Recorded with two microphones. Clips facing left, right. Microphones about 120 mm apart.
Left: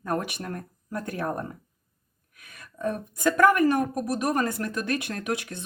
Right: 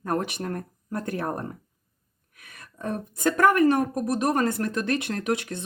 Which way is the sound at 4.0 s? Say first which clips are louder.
Right 2 dB; 30° right (ahead or behind).